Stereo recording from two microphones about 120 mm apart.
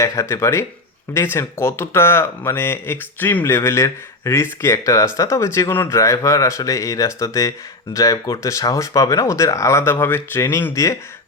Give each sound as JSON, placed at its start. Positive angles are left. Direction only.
{"t": 0.0, "sound": "speech", "side_deg": 25}